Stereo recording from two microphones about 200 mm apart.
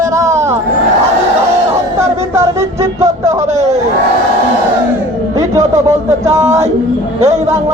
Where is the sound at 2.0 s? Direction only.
15° right (ahead or behind).